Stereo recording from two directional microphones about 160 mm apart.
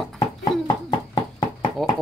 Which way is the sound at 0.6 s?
25° left (ahead or behind).